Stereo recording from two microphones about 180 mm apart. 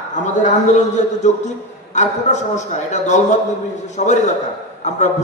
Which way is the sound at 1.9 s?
40° left (ahead or behind).